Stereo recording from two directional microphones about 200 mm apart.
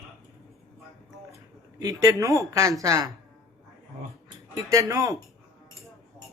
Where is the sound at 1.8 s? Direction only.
15° right (ahead or behind).